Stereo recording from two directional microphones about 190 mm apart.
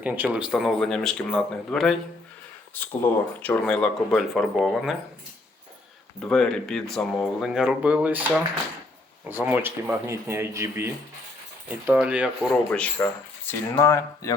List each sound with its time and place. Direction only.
0.0 s speech: 10° right (ahead or behind)
6.1 s speech: 5° left (ahead or behind)
12.7 s speech: 5° left (ahead or behind)